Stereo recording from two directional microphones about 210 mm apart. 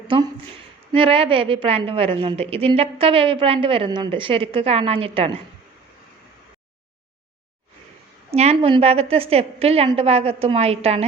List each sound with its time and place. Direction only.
0.9 s a woman's voice: 25° right (ahead or behind)
8.3 s a woman's voice: 30° right (ahead or behind)